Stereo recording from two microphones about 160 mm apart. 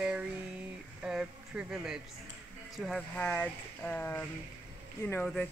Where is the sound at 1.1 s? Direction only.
5° right (ahead or behind).